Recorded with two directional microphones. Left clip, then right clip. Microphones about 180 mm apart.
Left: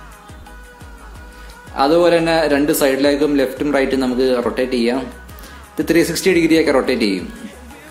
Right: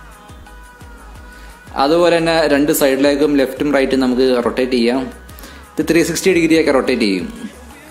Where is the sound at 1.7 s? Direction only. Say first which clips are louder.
Even; 20° right (ahead or behind).